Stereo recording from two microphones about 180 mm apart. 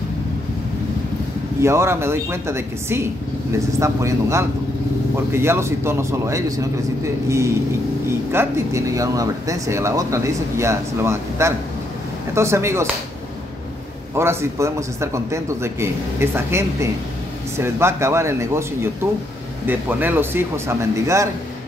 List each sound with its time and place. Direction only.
1.6 s speech: 15° right (ahead or behind)
14.1 s speech: 15° right (ahead or behind)